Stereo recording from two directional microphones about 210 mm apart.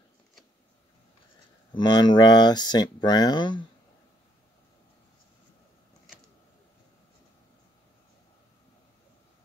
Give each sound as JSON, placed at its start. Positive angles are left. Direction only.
{"t": 1.7, "sound": "speech", "side_deg": 20}